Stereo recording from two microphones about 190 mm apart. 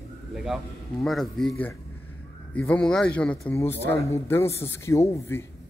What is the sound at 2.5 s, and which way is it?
Speech, 5° left (ahead or behind).